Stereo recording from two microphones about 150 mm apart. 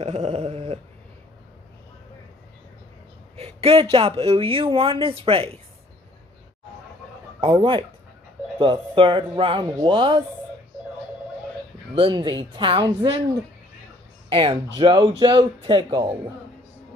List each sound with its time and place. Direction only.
0.0 s dog: 45° right (ahead or behind)
3.3 s speech: 40° right (ahead or behind)
7.3 s speech: 35° right (ahead or behind)
11.9 s speech: 35° right (ahead or behind)
14.3 s speech: 35° right (ahead or behind)